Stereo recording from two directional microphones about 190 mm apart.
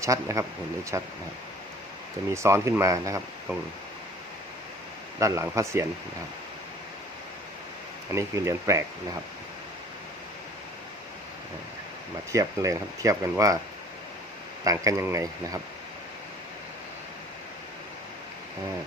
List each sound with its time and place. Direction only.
0.0 s speech: 15° right (ahead or behind)
2.3 s speech: 15° right (ahead or behind)
5.2 s speech: 15° right (ahead or behind)
8.1 s speech: 15° right (ahead or behind)
12.3 s speech: 15° right (ahead or behind)
14.6 s speech: 15° right (ahead or behind)